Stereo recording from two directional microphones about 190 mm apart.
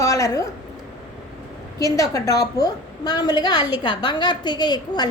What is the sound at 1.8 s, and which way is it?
A woman's voice, 15° left (ahead or behind).